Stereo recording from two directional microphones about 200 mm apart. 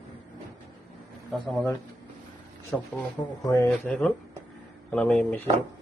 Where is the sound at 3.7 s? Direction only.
5° left (ahead or behind).